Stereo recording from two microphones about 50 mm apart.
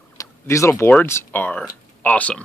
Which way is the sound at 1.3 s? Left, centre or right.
Left.